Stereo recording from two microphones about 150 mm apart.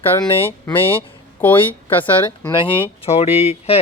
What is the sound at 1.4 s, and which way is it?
Speech, 15° left (ahead or behind).